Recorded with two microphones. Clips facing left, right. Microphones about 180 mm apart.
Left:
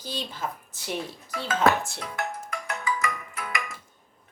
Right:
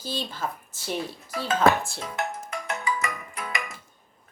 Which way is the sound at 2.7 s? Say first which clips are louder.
Even; 25° right (ahead or behind).